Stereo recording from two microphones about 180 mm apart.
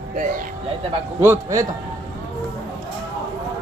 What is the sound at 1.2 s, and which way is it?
Speech, 15° right (ahead or behind).